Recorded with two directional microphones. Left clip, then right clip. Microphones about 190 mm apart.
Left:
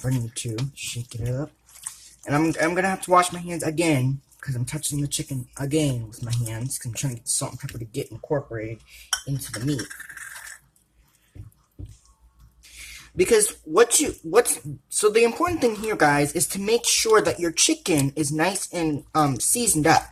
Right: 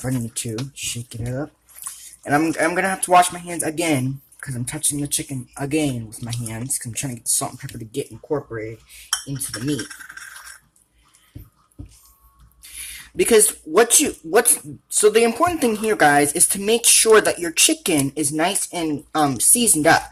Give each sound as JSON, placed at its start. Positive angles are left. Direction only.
{"t": 0.0, "sound": "speech", "side_deg": -20}
{"t": 12.7, "sound": "speech", "side_deg": -25}